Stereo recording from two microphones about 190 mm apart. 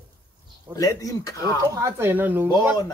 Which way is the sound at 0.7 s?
20° left (ahead or behind).